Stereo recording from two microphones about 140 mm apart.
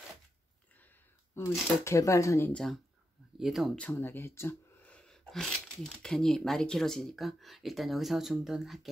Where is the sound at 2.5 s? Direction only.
5° left (ahead or behind).